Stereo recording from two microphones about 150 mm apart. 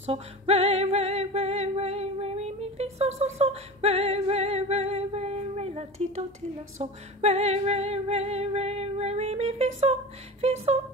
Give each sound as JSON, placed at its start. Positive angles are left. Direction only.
{"t": 0.0, "sound": "music", "side_deg": -45}